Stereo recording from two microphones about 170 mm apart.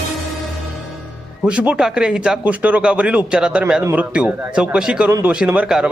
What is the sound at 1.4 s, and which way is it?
Speech, 5° right (ahead or behind).